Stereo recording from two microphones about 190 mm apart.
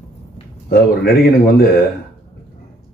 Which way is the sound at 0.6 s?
55° left (ahead or behind).